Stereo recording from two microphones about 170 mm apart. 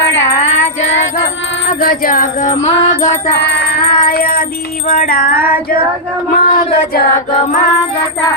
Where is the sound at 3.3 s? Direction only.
75° left (ahead or behind); by 4.4 s 60° left (ahead or behind).